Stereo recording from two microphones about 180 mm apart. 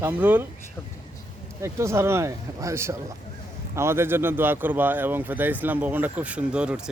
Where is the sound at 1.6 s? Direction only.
15° right (ahead or behind).